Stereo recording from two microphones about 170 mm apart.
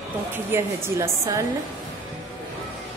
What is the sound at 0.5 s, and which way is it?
Music, 15° right (ahead or behind).